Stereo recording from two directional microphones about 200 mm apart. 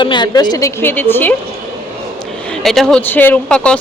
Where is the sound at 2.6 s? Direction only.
Centre (ahead or behind).